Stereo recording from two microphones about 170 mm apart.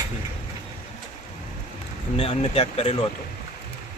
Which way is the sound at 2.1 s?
35° left (ahead or behind).